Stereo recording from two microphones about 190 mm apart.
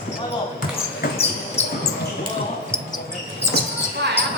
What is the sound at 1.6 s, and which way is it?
Basketball bounce, 35° left (ahead or behind).